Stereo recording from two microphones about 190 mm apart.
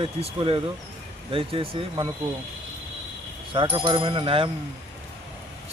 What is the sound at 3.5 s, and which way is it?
Speech, 25° right (ahead or behind).